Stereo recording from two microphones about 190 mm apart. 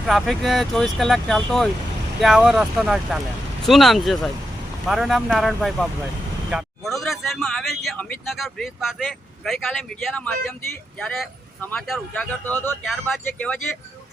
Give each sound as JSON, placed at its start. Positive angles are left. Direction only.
{"t": 0.0, "sound": "speech", "side_deg": 0}
{"t": 11.0, "sound": "speech", "side_deg": 0}